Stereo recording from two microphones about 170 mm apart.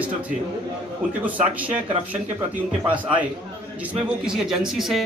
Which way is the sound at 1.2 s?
10° right (ahead or behind).